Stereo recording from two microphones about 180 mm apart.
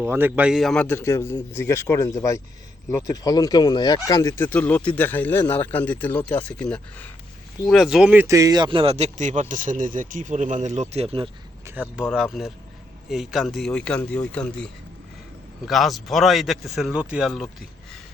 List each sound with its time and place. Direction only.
0.0 s speech: 10° right (ahead or behind); by 11.3 s 30° right (ahead or behind)
11.6 s a man's voice: 10° right (ahead or behind)